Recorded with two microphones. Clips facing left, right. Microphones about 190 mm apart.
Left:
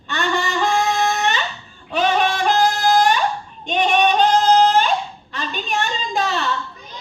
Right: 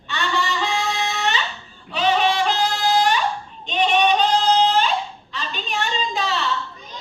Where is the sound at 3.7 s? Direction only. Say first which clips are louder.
Left 1 dB; 45° left (ahead or behind).